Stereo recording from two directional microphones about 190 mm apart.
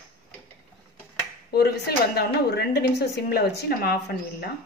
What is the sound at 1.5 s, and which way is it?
A woman's voice, 55° left (ahead or behind).